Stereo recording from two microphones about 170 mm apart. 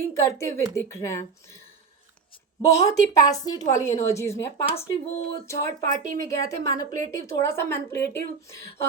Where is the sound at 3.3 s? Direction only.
20° left (ahead or behind).